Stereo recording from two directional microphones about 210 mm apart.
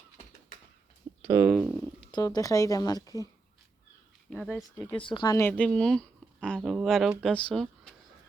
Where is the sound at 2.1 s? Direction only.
20° left (ahead or behind).